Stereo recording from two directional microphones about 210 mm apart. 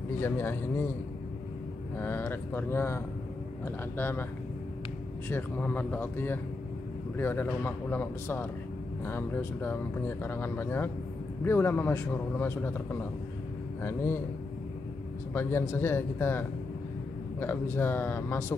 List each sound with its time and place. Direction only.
0.2 s speech: 10° left (ahead or behind)
2.0 s speech: 10° left (ahead or behind)
5.3 s speech: 10° left (ahead or behind)
13.8 s speech: 10° left (ahead or behind)
15.3 s speech: 10° left (ahead or behind)